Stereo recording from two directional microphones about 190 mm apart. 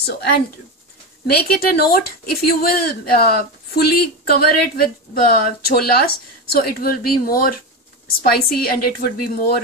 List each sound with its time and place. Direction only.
0.0 s speech: 60° left (ahead or behind)